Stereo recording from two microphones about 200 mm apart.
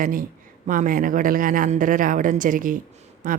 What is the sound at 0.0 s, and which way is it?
A woman's voice, 45° right (ahead or behind).